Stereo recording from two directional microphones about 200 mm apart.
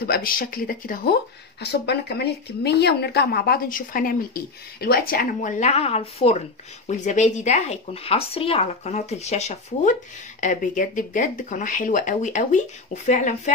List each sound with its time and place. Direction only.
0.0 s speech: 45° left (ahead or behind)